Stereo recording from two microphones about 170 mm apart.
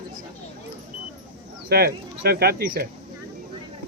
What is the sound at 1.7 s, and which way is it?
Speech, 65° right (ahead or behind).